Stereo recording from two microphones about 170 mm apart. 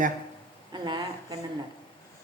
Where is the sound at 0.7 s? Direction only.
25° right (ahead or behind).